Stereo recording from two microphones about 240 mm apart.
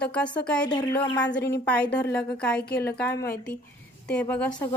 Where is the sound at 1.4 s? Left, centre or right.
Left.